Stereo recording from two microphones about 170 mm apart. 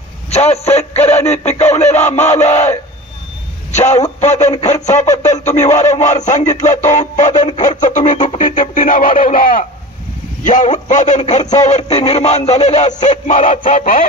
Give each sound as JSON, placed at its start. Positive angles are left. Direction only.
{"t": 0.3, "sound": "a man's voice", "side_deg": 40}
{"t": 3.7, "sound": "a man's voice", "side_deg": 45}